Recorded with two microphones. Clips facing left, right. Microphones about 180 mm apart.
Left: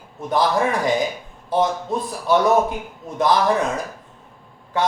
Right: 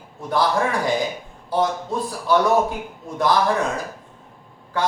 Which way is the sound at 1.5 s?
20° left (ahead or behind).